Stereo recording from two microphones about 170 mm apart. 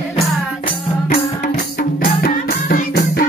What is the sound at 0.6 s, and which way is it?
Music, 55° left (ahead or behind).